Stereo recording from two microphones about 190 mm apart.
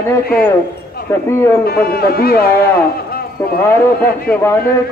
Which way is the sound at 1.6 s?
55° left (ahead or behind).